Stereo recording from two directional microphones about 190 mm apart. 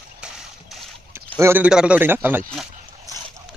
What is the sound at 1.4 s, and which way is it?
A man's voice, 10° right (ahead or behind).